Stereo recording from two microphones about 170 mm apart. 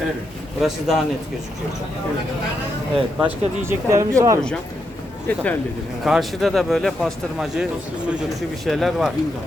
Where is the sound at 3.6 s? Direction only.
15° right (ahead or behind).